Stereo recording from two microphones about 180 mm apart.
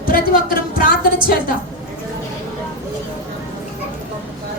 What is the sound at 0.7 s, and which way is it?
Speech, 50° left (ahead or behind).